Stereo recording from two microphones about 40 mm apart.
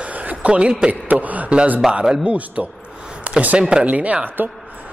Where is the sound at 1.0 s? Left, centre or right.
Right.